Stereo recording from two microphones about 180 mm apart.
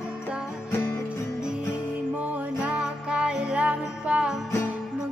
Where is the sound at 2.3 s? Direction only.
5° right (ahead or behind).